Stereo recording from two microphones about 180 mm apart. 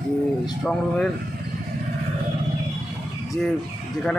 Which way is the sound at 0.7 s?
5° left (ahead or behind).